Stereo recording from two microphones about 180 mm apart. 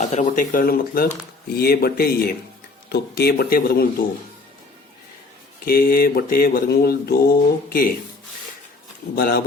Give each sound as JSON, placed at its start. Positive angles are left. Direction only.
{"t": 0.0, "sound": "speech", "side_deg": 40}
{"t": 1.5, "sound": "mantra", "side_deg": 60}
{"t": 5.6, "sound": "mantra", "side_deg": 55}
{"t": 9.1, "sound": "mantra", "side_deg": 55}